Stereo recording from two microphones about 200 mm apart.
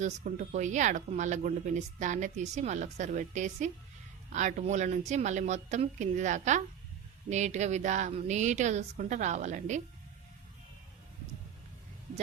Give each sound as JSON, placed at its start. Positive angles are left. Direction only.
{"t": 0.0, "sound": "speech", "side_deg": -40}